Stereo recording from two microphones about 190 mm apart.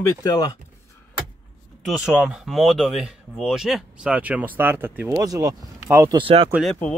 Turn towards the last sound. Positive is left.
turn(degrees=0)  # may be behind; listen again after turning